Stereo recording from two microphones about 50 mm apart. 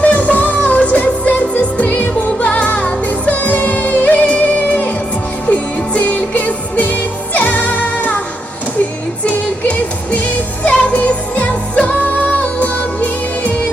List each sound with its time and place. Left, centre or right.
0.0 s music: left
9.2 s music: left